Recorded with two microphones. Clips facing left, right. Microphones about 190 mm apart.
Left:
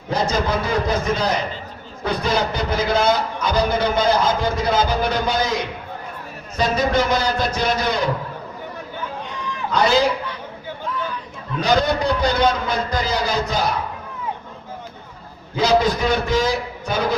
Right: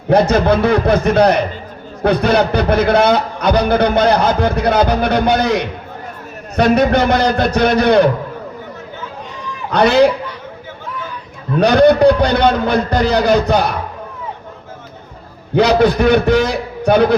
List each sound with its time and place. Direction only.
0.1 s a man's voice: 65° right (ahead or behind)
9.7 s a man's voice: 65° right (ahead or behind)
11.6 s a man's voice: 60° right (ahead or behind)
15.5 s a man's voice: 60° right (ahead or behind)